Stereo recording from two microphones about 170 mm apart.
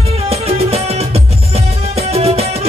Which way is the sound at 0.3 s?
35° right (ahead or behind).